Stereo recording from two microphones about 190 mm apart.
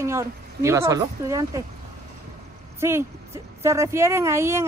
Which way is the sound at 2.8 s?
15° right (ahead or behind).